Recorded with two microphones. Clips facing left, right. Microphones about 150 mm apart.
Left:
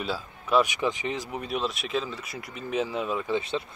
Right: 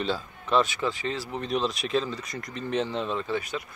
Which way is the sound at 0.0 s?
5° left (ahead or behind).